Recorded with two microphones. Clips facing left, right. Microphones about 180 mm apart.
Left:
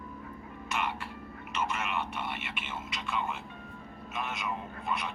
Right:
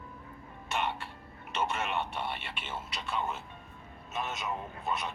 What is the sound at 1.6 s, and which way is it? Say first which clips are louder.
Speech: right 1 dB; 30° right (ahead or behind).